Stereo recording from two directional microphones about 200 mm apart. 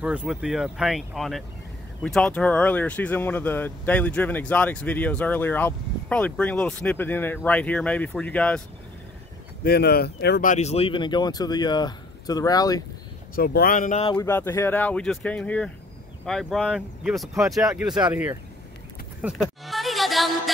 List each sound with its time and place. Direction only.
0.0 s speech: 5° right (ahead or behind)
9.6 s speech: 50° left (ahead or behind)
10.5 s speech: 35° left (ahead or behind)
13.3 s speech: 50° left (ahead or behind)
14.1 s speech: 10° left (ahead or behind); by 18.4 s 10° right (ahead or behind)
19.2 s music: centre (ahead or behind)